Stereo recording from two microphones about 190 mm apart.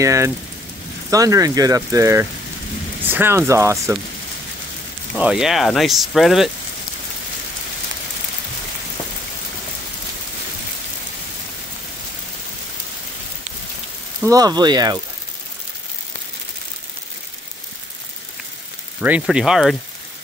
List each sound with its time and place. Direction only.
0.0 s speech: 15° right (ahead or behind)
5.1 s speech: 5° right (ahead or behind)
14.2 s speech: 20° right (ahead or behind)
18.9 s speech: 5° right (ahead or behind)